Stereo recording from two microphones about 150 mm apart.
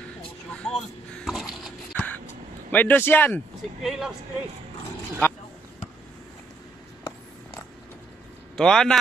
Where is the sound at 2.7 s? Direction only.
15° left (ahead or behind).